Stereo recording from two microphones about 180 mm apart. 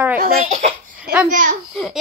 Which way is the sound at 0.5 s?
45° right (ahead or behind).